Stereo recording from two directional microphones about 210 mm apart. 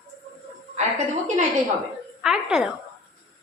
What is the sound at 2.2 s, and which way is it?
Speech, centre (ahead or behind).